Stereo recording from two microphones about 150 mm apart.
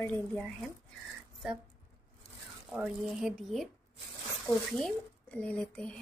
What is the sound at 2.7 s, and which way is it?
Speech, 5° right (ahead or behind).